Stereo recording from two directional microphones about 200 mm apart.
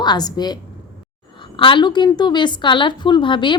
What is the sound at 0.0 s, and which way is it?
A woman's voice, 20° left (ahead or behind).